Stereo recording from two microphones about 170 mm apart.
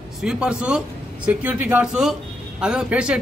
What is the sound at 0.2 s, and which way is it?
Speech, 5° right (ahead or behind).